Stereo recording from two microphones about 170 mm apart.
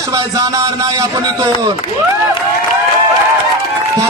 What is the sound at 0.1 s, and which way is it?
A man's voice, 20° right (ahead or behind).